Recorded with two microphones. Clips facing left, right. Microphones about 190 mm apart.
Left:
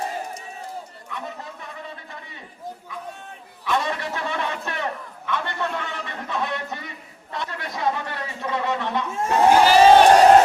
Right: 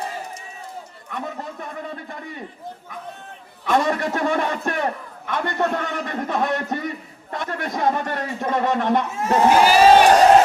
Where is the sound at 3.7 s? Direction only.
45° right (ahead or behind).